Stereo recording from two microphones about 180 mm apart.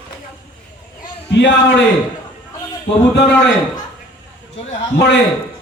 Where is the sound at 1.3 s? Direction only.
75° left (ahead or behind).